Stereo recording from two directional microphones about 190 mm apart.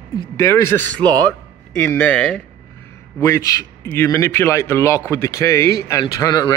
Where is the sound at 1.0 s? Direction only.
20° right (ahead or behind).